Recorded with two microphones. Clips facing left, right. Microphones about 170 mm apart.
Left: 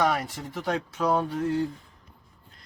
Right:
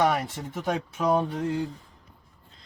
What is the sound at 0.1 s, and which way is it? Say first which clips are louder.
Speech: right 1 dB; 20° right (ahead or behind).